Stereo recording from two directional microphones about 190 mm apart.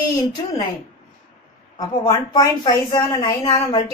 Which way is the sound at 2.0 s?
20° left (ahead or behind).